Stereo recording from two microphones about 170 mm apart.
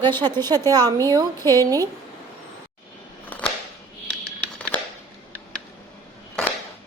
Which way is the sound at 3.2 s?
10° left (ahead or behind).